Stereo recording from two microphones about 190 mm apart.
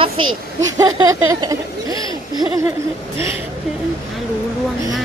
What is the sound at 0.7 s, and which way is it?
Laughter, 20° right (ahead or behind).